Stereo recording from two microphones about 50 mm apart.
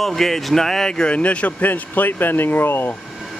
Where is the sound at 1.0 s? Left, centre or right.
Left.